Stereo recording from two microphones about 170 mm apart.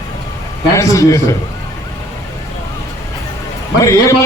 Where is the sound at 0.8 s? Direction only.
20° left (ahead or behind).